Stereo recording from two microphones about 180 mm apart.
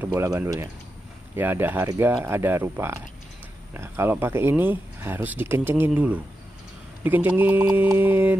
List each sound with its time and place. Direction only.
0.0 s speech: 15° right (ahead or behind)